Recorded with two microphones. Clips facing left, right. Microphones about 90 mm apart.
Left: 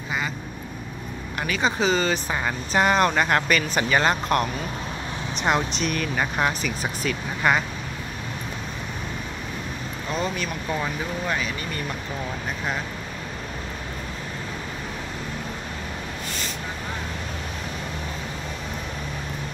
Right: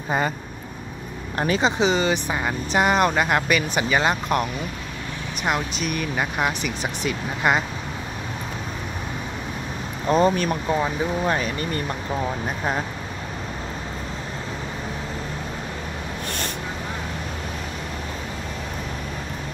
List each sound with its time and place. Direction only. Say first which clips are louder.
1.4 s speech: right 4 dB; 30° right (ahead or behind)
1.8 s speech: right 2 dB; 20° right (ahead or behind)
10.0 s speech: right 9 dB; 40° right (ahead or behind)